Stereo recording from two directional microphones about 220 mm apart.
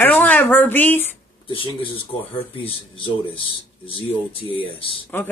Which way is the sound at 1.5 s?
25° left (ahead or behind).